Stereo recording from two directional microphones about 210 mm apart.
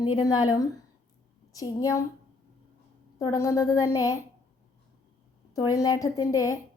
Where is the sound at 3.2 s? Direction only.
15° left (ahead or behind).